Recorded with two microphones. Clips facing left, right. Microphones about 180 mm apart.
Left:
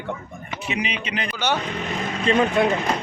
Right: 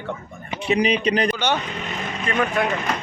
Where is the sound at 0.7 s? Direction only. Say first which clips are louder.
Right 9 dB; 35° right (ahead or behind).